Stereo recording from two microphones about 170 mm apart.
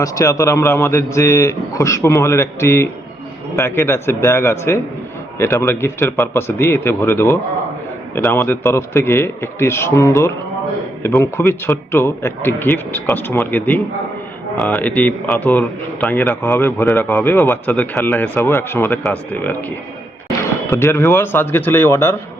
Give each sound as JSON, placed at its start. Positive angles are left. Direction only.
{"t": 0.0, "sound": "a man's voice", "side_deg": 20}